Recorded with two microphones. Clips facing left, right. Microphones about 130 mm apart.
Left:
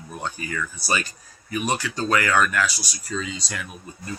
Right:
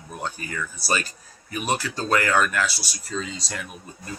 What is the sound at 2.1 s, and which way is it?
Speech, 35° right (ahead or behind).